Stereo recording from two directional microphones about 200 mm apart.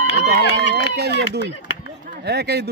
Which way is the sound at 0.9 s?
55° right (ahead or behind).